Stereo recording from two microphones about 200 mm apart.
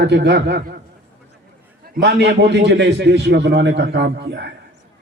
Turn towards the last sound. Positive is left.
turn(degrees=-55)  # may be behind; listen again after turning